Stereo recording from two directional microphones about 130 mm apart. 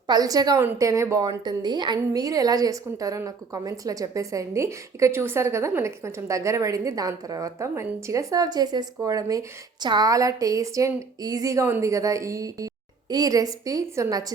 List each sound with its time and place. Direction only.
0.1 s a woman's voice: 30° right (ahead or behind)